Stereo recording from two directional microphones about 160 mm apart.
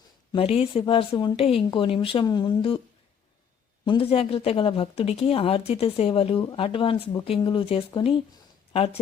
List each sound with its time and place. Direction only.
0.3 s speech: 35° left (ahead or behind)
3.8 s speech: 35° left (ahead or behind)